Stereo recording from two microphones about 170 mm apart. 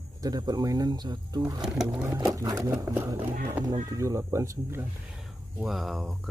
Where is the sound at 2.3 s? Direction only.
20° right (ahead or behind).